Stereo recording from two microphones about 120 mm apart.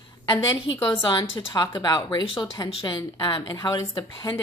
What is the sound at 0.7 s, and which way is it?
A woman's voice, 45° left (ahead or behind).